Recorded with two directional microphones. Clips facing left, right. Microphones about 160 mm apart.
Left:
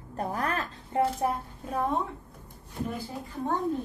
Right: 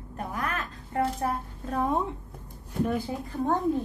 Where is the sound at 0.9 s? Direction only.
20° left (ahead or behind).